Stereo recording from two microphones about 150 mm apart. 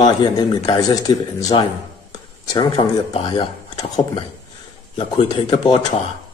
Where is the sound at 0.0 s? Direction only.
30° left (ahead or behind).